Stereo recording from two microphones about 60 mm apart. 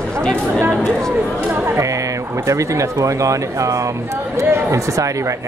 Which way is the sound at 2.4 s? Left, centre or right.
Right.